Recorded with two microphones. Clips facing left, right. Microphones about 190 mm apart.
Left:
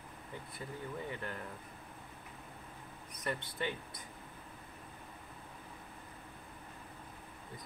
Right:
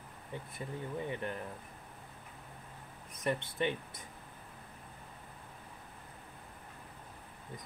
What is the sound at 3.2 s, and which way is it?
Speech, 20° right (ahead or behind).